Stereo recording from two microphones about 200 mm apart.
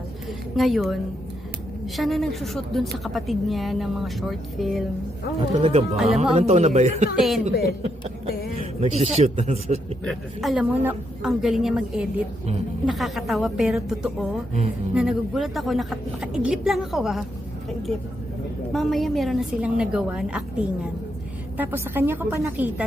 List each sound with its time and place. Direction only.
0.5 s a woman's voice: centre (ahead or behind)
2.0 s a woman's voice: centre (ahead or behind)
5.6 s speech: 30° right (ahead or behind)
7.2 s a woman's voice: centre (ahead or behind)
7.5 s a woman's voice: 50° left (ahead or behind)
8.8 s speech: 30° right (ahead or behind)
10.0 s a woman's voice: centre (ahead or behind)
18.7 s a woman's voice: centre (ahead or behind)